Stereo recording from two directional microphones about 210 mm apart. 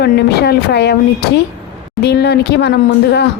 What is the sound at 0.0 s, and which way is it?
Speech, 50° left (ahead or behind).